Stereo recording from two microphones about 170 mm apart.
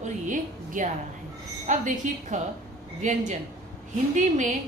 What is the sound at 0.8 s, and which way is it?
A woman's voice, 50° right (ahead or behind).